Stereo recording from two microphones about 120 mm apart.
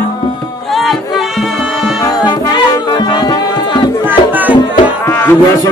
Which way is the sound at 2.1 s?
35° left (ahead or behind).